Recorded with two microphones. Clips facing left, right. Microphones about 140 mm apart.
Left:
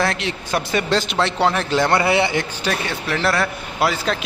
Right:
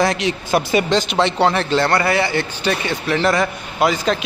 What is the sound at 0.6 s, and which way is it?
Speech, 5° right (ahead or behind).